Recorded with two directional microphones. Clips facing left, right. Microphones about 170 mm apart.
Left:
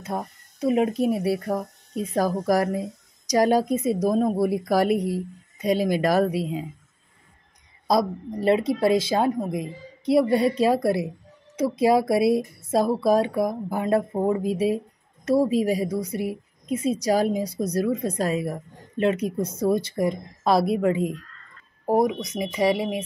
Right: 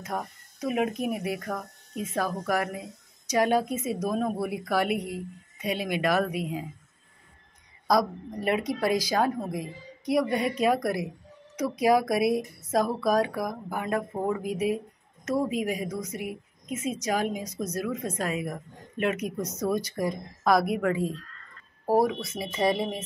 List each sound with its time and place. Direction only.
0.0 s speech: 25° left (ahead or behind)
7.9 s speech: 25° left (ahead or behind); by 23.0 s 10° left (ahead or behind)